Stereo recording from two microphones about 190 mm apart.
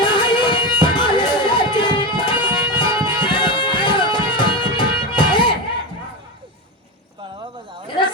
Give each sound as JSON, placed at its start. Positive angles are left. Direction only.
{"t": 0.0, "sound": "music", "side_deg": 25}